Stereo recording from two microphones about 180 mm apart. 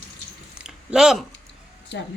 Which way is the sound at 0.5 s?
5° right (ahead or behind).